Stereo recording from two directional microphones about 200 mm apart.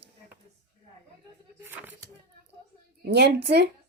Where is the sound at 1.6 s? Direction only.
10° right (ahead or behind).